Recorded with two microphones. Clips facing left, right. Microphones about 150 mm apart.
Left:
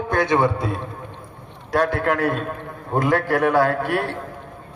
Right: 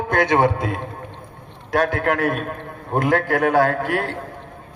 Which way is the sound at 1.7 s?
55° right (ahead or behind).